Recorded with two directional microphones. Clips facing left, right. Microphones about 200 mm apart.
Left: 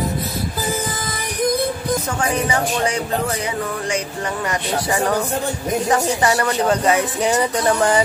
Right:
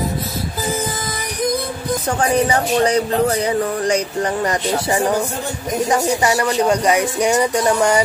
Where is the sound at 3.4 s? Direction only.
35° right (ahead or behind).